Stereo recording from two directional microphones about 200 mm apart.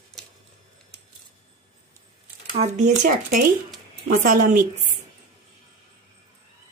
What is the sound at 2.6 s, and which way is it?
Speech, 35° right (ahead or behind).